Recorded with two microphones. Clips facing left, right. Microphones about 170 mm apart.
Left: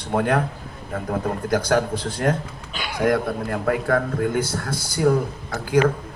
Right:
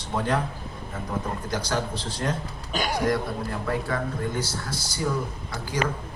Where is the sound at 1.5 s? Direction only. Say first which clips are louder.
Left 10 dB; 55° left (ahead or behind).